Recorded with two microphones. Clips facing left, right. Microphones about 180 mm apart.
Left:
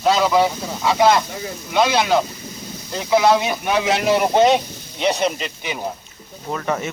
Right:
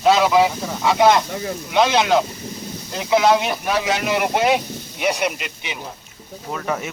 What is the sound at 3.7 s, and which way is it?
Speech, 25° left (ahead or behind).